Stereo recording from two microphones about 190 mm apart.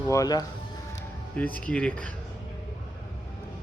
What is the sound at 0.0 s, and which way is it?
Speech, 15° left (ahead or behind).